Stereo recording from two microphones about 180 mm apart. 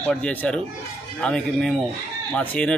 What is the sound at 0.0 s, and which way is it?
Speech, 5° left (ahead or behind).